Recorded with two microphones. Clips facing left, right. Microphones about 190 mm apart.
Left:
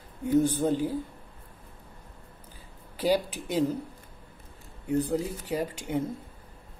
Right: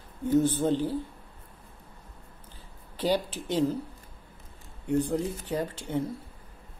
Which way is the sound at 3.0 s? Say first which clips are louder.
Left 2 dB; 10° left (ahead or behind).